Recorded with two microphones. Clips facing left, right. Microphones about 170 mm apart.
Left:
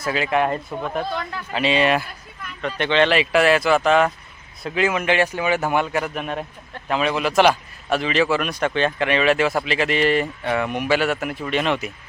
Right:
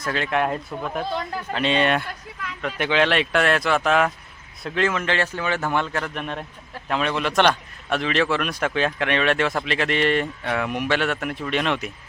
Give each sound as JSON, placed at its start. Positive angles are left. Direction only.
{"t": 0.0, "sound": "a man's voice", "side_deg": 5}
{"t": 2.0, "sound": "speech", "side_deg": -90}
{"t": 2.6, "sound": "a man's voice", "side_deg": -5}